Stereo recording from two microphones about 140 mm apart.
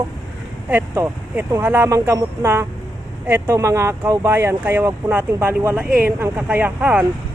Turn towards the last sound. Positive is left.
turn(degrees=-10)  # may be behind; listen again after turning